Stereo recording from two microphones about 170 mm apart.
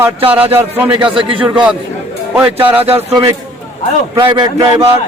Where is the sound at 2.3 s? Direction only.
10° right (ahead or behind).